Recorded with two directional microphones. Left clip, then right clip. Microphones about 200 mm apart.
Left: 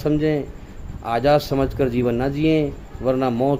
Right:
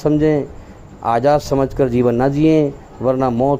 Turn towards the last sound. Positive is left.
turn(degrees=-20)  # may be behind; listen again after turning